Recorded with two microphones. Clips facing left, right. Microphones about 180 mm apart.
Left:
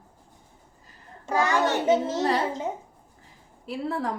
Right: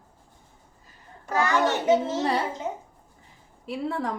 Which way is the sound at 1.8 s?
Centre (ahead or behind).